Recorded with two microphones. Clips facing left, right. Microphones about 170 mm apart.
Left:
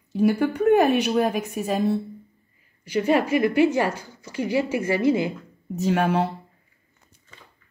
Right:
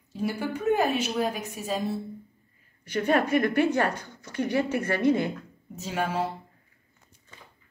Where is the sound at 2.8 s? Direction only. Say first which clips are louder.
Left 3 dB; 10° left (ahead or behind).